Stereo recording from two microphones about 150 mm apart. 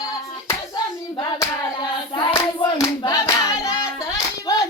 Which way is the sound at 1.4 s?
30° left (ahead or behind).